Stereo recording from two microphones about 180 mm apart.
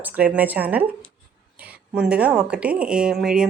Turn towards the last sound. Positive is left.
turn(degrees=-5)  # may be behind; listen again after turning